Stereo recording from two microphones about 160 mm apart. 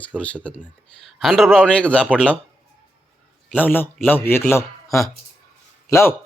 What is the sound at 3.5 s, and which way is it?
A man's voice, 10° left (ahead or behind).